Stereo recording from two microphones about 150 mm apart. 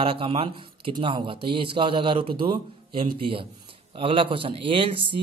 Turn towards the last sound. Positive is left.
turn(degrees=-35)  # may be behind; listen again after turning